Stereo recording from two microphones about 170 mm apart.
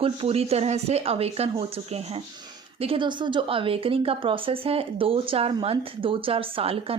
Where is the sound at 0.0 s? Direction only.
35° right (ahead or behind).